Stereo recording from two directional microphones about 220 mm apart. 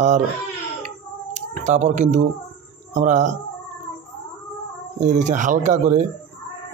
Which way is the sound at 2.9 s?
35° right (ahead or behind).